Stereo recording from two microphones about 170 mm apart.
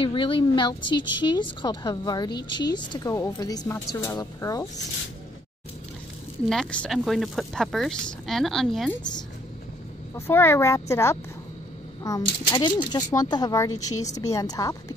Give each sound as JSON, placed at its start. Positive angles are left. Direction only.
{"t": 0.0, "sound": "a woman's voice", "side_deg": 30}
{"t": 6.5, "sound": "speech", "side_deg": 5}
{"t": 10.1, "sound": "a woman's voice", "side_deg": 15}